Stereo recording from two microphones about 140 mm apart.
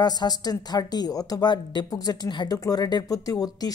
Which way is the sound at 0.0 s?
30° left (ahead or behind).